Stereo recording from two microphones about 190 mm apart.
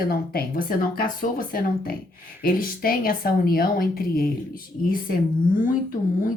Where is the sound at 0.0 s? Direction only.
50° left (ahead or behind).